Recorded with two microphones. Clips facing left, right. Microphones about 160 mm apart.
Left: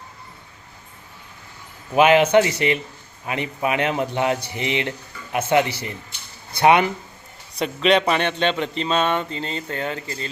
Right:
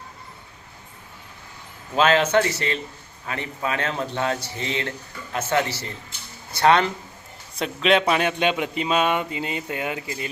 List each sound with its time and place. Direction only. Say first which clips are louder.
2.0 s speech: left 4 dB; 15° left (ahead or behind)
7.6 s a man's voice: left 2 dB; centre (ahead or behind)